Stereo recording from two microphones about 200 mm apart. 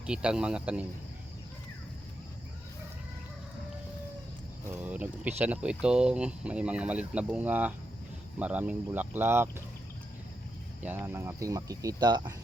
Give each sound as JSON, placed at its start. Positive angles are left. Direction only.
{"t": 0.0, "sound": "speech", "side_deg": -5}
{"t": 4.6, "sound": "speech", "side_deg": -10}
{"t": 10.8, "sound": "speech", "side_deg": -10}